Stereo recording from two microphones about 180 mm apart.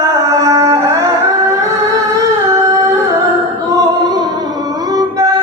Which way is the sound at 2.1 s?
15° right (ahead or behind).